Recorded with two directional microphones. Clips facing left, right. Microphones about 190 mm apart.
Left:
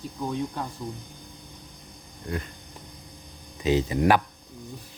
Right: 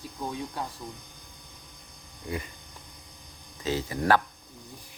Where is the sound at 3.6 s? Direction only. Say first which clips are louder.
Left 7 dB; 20° left (ahead or behind).